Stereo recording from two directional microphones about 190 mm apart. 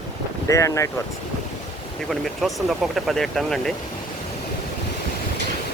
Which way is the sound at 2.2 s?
Centre (ahead or behind).